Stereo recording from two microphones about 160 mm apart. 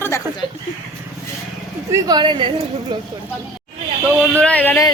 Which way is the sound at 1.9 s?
25° right (ahead or behind).